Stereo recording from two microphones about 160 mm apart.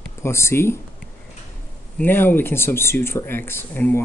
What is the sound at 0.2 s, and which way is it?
Speech, 15° left (ahead or behind).